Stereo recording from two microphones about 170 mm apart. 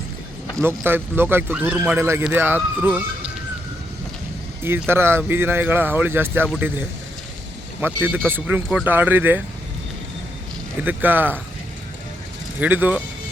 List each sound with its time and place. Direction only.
0.6 s speech: 10° right (ahead or behind)
4.6 s speech: 15° right (ahead or behind)
7.8 s speech: 10° right (ahead or behind)
10.8 s speech: 10° right (ahead or behind)
12.5 s speech: 10° right (ahead or behind)